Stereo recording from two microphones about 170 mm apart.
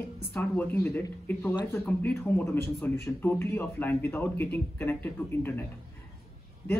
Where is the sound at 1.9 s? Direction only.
10° left (ahead or behind).